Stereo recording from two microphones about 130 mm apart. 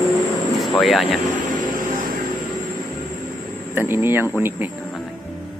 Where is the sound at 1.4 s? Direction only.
90° right.